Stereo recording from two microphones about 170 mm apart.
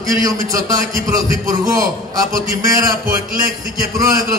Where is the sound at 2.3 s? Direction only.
55° right (ahead or behind).